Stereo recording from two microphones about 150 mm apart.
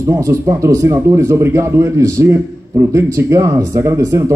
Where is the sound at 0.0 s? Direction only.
15° right (ahead or behind).